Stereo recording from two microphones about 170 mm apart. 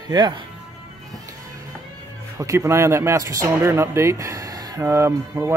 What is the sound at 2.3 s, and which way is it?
Speech, 15° right (ahead or behind).